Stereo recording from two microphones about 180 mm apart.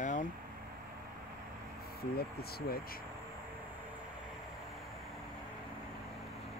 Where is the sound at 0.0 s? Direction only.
45° left (ahead or behind).